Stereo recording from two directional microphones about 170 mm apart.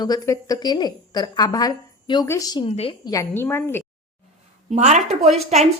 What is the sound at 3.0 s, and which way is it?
Speech, 20° left (ahead or behind).